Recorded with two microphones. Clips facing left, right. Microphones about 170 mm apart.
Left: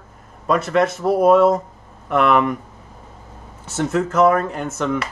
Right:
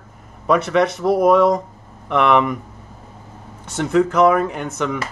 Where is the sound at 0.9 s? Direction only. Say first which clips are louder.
Left 1 dB; 15° right (ahead or behind).